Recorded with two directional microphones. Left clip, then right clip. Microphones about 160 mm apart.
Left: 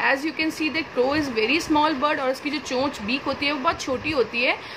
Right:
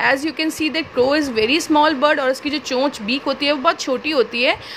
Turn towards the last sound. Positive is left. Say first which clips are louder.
# right 5 dB
turn(degrees=-45)  # may be behind; listen again after turning